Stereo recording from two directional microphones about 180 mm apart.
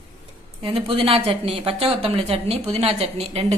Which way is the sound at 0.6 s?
30° right (ahead or behind).